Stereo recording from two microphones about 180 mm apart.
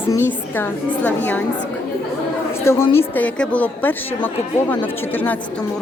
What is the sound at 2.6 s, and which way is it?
A woman's voice, 15° left (ahead or behind).